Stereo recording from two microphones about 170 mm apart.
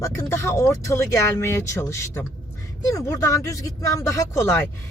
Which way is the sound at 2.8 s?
20° left (ahead or behind).